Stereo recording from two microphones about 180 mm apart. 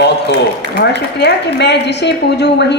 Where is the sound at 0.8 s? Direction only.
70° left (ahead or behind).